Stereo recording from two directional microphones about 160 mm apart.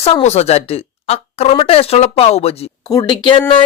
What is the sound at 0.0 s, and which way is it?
Speech, 40° left (ahead or behind).